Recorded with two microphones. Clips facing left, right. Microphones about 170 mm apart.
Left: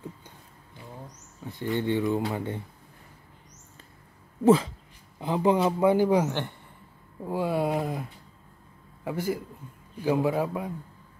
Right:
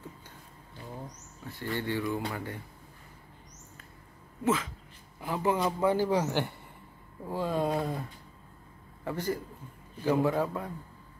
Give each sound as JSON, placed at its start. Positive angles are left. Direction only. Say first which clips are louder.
{"t": 1.4, "sound": "speech", "louder": "left 6 dB", "side_deg": 20}
{"t": 4.4, "sound": "speech", "louder": "left 9 dB", "side_deg": 35}
{"t": 5.2, "sound": "a man's voice", "louder": "left 5 dB", "side_deg": 20}
{"t": 9.0, "sound": "a man's voice", "louder": "left 3 dB", "side_deg": 10}